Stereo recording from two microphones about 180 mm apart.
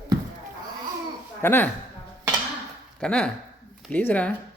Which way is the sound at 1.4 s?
10° left (ahead or behind).